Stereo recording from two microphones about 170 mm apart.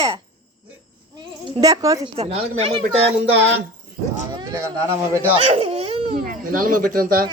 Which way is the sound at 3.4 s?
90° right.